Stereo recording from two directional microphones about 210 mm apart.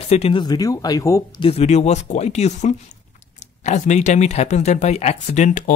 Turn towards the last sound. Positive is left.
turn(degrees=35)  # may be behind; listen again after turning